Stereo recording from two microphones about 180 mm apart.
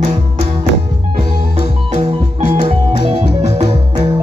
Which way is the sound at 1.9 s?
40° right (ahead or behind).